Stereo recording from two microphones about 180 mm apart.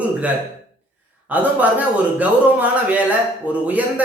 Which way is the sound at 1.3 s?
10° right (ahead or behind).